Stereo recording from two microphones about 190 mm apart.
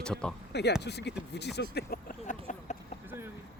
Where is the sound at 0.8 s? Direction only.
60° left (ahead or behind); by 2.4 s 45° left (ahead or behind).